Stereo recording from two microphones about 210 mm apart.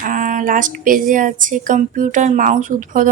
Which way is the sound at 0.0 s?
40° right (ahead or behind).